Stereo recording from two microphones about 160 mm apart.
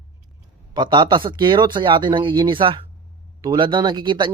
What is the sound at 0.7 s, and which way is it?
Speech, 25° right (ahead or behind).